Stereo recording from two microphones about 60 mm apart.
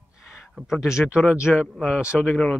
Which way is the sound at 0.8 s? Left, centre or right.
Centre.